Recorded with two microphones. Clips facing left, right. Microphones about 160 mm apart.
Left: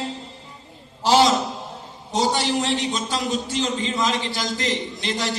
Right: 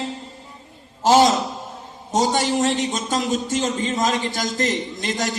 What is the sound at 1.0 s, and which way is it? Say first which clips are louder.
A man's voice: right 2 dB; 45° right (ahead or behind).